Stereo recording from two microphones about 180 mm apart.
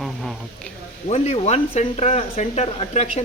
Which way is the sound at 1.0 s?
35° left (ahead or behind).